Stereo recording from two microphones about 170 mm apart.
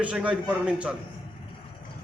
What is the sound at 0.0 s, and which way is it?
Speech, 5° right (ahead or behind).